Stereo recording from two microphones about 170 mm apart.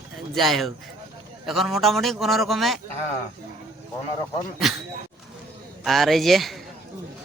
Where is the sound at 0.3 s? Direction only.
Centre (ahead or behind).